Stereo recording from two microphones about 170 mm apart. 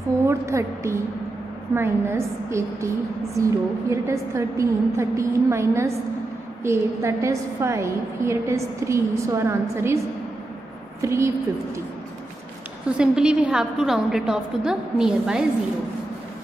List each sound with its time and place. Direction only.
0.3 s a woman's voice: 15° right (ahead or behind)
11.0 s a woman's voice: 15° right (ahead or behind)
12.9 s a woman's voice: 5° right (ahead or behind)